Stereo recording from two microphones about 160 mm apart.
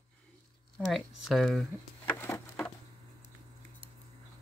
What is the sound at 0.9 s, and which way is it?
Speech, centre (ahead or behind).